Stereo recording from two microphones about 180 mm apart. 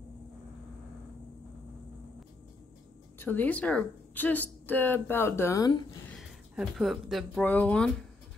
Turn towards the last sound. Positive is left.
turn(degrees=5)  # may be behind; listen again after turning